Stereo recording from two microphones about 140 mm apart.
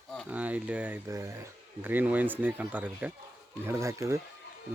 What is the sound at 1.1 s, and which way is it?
Speech, 25° right (ahead or behind).